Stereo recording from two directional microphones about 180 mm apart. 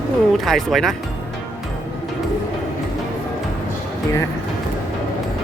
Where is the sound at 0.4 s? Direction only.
Centre (ahead or behind).